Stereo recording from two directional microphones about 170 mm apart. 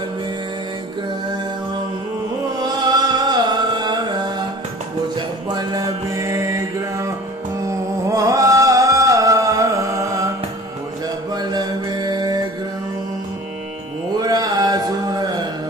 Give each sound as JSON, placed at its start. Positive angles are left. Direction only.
{"t": 2.6, "sound": "music", "side_deg": -25}
{"t": 5.5, "sound": "music", "side_deg": -25}
{"t": 8.1, "sound": "music", "side_deg": -20}
{"t": 11.4, "sound": "music", "side_deg": -25}
{"t": 14.2, "sound": "a sound", "side_deg": -20}